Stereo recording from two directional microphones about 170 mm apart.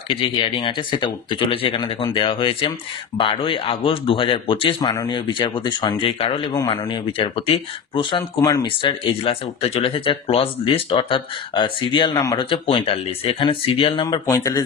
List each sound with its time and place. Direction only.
0.1 s speech: 30° left (ahead or behind)
6.5 s speech: 25° left (ahead or behind)
14.0 s speech: 15° left (ahead or behind)